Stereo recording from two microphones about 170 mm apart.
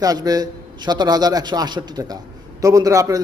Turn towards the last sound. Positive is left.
turn(degrees=-20)  # may be behind; listen again after turning